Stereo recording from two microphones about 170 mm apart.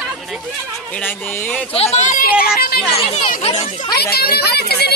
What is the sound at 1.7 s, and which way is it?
Speech, 40° left (ahead or behind).